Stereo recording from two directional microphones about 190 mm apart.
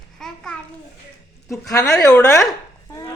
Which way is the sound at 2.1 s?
Centre (ahead or behind).